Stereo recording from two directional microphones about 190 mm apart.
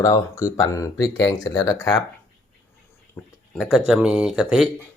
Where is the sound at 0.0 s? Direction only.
15° left (ahead or behind).